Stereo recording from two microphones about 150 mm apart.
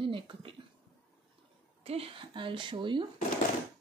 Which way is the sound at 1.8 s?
40° right (ahead or behind).